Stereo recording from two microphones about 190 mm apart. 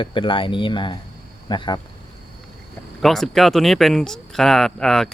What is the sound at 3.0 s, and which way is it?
Speech, centre (ahead or behind).